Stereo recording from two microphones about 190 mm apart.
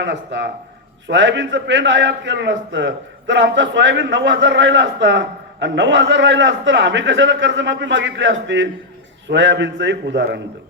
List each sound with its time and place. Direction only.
0.0 s a man's voice: 70° right (ahead or behind)